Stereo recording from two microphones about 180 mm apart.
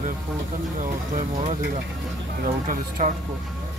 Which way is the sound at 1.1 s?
45° right (ahead or behind).